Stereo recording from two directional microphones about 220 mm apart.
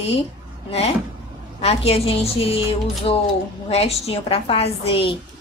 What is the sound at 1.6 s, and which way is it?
A woman's voice, 25° left (ahead or behind).